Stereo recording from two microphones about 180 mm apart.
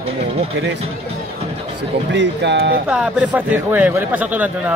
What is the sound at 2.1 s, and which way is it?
Speech, 90° right.